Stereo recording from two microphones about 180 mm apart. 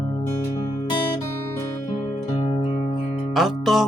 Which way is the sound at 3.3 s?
Centre (ahead or behind).